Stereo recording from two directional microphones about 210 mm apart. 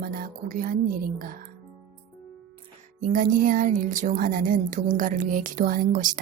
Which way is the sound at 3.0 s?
40° right (ahead or behind).